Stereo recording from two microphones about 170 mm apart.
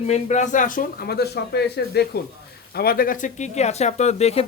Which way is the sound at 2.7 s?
65° left (ahead or behind).